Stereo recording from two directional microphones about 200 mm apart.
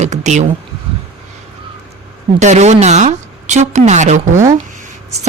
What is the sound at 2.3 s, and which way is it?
A woman's voice, 35° right (ahead or behind).